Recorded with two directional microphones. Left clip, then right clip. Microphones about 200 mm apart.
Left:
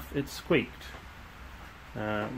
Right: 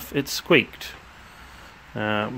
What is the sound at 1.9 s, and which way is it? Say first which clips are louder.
Speech: right 8 dB; 50° right (ahead or behind).